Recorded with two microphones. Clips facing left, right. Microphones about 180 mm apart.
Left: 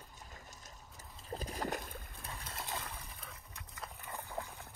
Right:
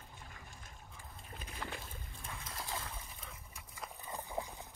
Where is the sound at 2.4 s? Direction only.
25° left (ahead or behind).